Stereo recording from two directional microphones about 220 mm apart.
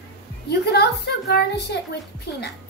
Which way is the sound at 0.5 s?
50° left (ahead or behind).